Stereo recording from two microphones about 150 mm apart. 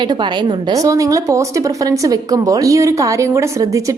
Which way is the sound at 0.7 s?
20° right (ahead or behind).